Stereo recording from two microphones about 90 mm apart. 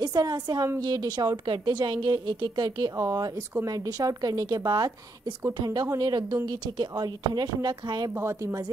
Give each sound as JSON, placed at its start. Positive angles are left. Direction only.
{"t": 0.0, "sound": "speech", "side_deg": -50}
{"t": 3.0, "sound": "speech", "side_deg": -35}
{"t": 8.1, "sound": "speech", "side_deg": -30}